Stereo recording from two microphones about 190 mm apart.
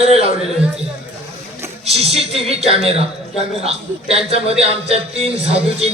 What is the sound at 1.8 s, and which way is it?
A man's voice, 30° right (ahead or behind).